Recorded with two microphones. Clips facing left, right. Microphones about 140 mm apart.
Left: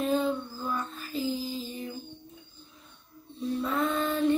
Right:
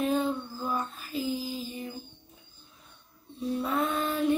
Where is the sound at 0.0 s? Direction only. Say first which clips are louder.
Even; 5° right (ahead or behind).